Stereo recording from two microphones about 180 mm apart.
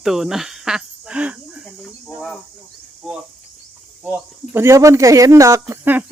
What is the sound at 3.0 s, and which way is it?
Speech, 5° right (ahead or behind).